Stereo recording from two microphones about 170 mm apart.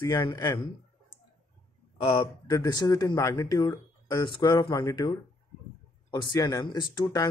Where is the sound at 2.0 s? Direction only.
30° left (ahead or behind).